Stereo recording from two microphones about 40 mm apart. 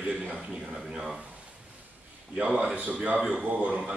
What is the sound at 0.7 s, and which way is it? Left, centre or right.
Speech, centre.